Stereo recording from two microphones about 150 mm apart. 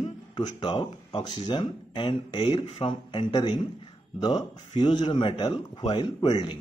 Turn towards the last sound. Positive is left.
turn(degrees=30)  # may be behind; listen again after turning